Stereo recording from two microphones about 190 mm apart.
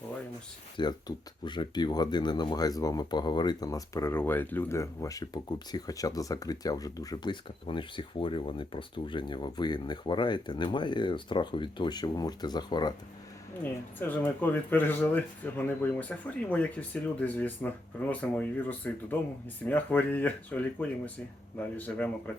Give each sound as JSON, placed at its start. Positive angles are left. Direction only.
{"t": 0.8, "sound": "speech", "side_deg": 20}
{"t": 14.0, "sound": "speech", "side_deg": 10}